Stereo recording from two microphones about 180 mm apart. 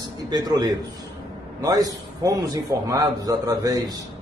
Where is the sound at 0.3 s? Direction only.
20° right (ahead or behind).